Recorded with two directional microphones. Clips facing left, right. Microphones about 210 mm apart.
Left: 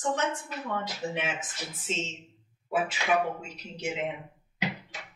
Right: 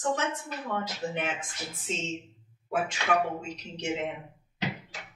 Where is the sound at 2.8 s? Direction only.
5° left (ahead or behind).